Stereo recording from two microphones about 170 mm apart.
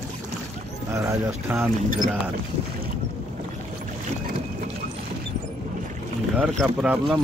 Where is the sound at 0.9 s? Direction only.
15° right (ahead or behind).